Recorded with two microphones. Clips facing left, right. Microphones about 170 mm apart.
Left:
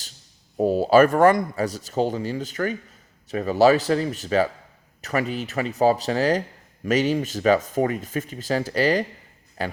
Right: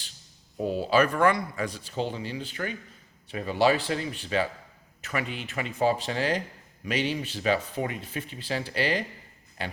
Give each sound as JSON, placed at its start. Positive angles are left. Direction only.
{"t": 0.5, "sound": "speech", "side_deg": 45}